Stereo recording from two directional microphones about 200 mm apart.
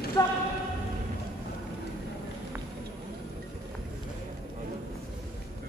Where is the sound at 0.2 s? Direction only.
15° left (ahead or behind).